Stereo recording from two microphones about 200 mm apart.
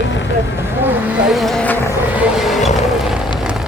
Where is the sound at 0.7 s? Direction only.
10° right (ahead or behind); by 2.0 s 10° left (ahead or behind).